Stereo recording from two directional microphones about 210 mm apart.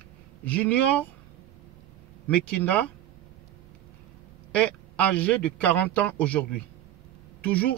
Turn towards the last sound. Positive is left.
turn(degrees=5)  # may be behind; listen again after turning